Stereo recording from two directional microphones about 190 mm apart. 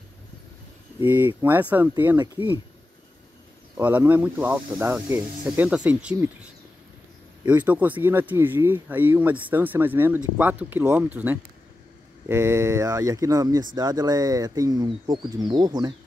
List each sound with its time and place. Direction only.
0.9 s speech: 10° right (ahead or behind)
3.7 s speech: 10° right (ahead or behind)
12.3 s speech: 15° right (ahead or behind)